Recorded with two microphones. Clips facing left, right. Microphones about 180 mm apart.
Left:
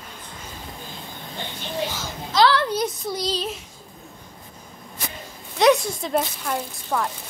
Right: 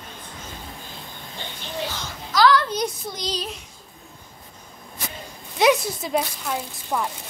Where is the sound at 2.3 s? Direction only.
25° left (ahead or behind).